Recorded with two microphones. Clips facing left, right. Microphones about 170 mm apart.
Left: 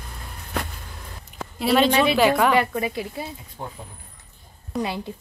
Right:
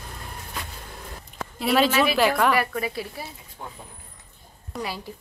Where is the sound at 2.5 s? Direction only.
20° left (ahead or behind).